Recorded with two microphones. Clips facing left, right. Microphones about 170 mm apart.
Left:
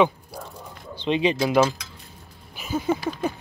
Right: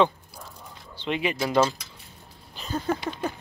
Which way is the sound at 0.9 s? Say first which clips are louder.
Left 6 dB; 20° left (ahead or behind).